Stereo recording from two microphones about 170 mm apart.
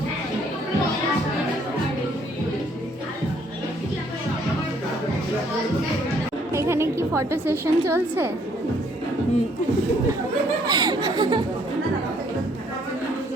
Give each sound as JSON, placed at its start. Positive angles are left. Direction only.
{"t": 6.5, "sound": "a woman's voice", "side_deg": -15}
{"t": 10.7, "sound": "speech", "side_deg": -25}